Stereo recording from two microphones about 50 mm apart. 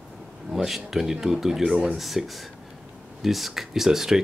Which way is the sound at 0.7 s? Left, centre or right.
Centre.